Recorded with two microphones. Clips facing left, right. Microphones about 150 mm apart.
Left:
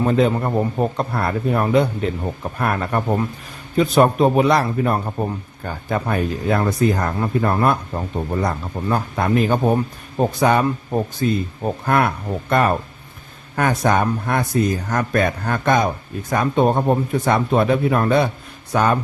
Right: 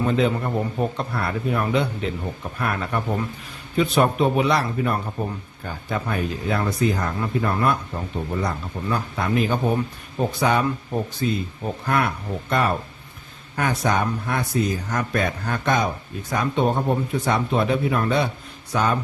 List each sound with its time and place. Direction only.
0.0 s a man's voice: 40° left (ahead or behind)